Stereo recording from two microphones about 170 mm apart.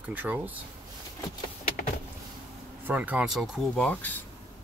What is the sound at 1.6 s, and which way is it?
Power windows, 55° left (ahead or behind).